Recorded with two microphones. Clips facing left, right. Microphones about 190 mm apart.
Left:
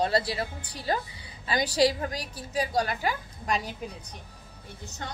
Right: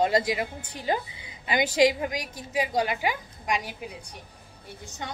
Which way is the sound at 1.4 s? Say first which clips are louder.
Right 2 dB; 20° right (ahead or behind).